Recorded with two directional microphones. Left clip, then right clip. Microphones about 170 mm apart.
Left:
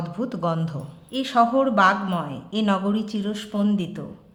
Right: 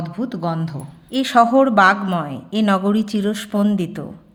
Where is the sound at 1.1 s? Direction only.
40° right (ahead or behind).